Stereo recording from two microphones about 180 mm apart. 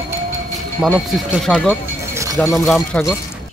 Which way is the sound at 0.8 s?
5° left (ahead or behind).